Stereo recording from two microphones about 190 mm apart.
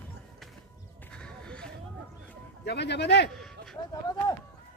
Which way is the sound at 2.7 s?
65° left (ahead or behind).